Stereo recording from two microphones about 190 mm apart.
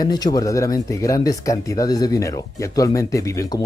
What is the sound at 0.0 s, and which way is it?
Speech, 20° left (ahead or behind).